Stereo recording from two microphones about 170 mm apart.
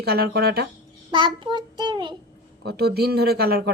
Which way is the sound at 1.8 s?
25° right (ahead or behind).